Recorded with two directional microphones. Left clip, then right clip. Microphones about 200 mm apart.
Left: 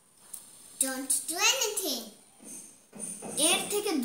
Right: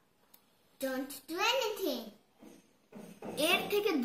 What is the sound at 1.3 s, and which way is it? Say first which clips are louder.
Speech: left 4 dB; 15° left (ahead or behind).